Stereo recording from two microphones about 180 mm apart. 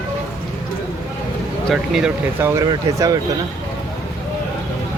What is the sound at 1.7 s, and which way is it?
Speech, centre (ahead or behind).